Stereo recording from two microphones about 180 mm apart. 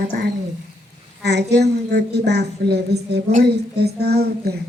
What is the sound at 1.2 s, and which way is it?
A woman's voice, 70° right (ahead or behind).